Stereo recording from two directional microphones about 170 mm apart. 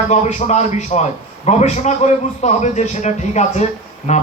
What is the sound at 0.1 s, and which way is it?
A man's voice, 40° left (ahead or behind).